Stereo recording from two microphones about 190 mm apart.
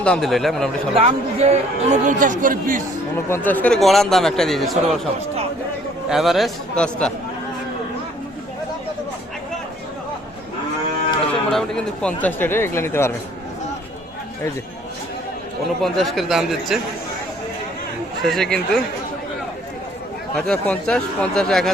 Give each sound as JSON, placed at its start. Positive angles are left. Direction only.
{"t": 0.0, "sound": "a man's voice", "side_deg": 5}
{"t": 0.9, "sound": "a man's voice", "side_deg": -35}
{"t": 3.2, "sound": "a man's voice", "side_deg": 10}
{"t": 6.1, "sound": "a man's voice", "side_deg": 0}
{"t": 11.5, "sound": "speech", "side_deg": 5}
{"t": 15.8, "sound": "a man's voice", "side_deg": 0}
{"t": 18.2, "sound": "a man's voice", "side_deg": 0}
{"t": 20.3, "sound": "a man's voice", "side_deg": 5}